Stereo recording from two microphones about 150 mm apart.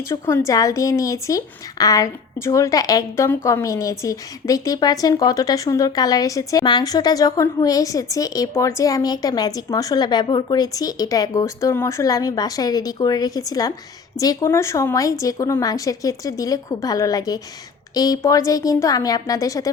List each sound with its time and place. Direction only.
0.1 s speech: 15° left (ahead or behind)